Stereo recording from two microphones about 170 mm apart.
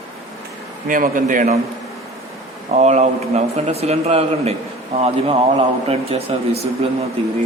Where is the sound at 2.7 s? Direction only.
40° right (ahead or behind).